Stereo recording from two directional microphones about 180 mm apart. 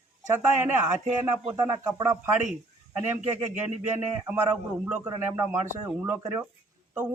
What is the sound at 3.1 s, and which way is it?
Speech, 40° right (ahead or behind).